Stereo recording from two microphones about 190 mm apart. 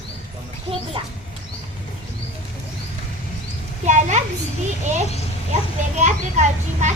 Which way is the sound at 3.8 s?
40° right (ahead or behind).